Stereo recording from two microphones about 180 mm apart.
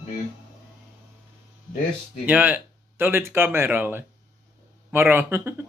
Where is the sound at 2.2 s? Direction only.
10° right (ahead or behind).